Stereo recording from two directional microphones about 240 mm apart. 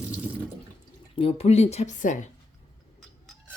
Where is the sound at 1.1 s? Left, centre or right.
Left.